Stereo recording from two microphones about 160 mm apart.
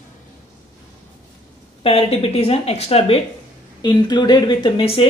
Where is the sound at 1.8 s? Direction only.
40° left (ahead or behind).